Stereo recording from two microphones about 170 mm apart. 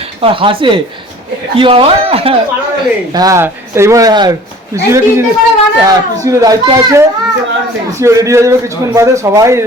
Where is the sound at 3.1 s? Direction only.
20° right (ahead or behind).